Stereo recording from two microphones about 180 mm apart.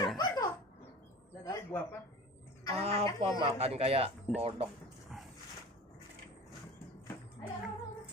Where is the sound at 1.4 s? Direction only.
15° left (ahead or behind).